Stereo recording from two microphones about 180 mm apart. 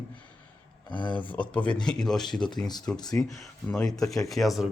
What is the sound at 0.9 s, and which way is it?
Speech, 25° left (ahead or behind).